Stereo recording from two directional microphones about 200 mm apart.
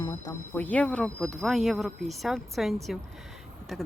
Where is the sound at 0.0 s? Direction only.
15° left (ahead or behind).